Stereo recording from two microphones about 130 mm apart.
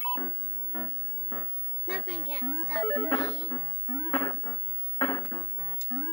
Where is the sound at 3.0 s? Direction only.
25° left (ahead or behind).